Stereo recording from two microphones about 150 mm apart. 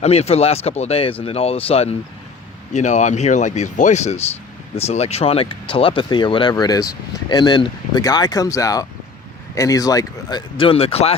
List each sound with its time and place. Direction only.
0.0 s speech: 45° left (ahead or behind)
2.7 s speech: 55° left (ahead or behind)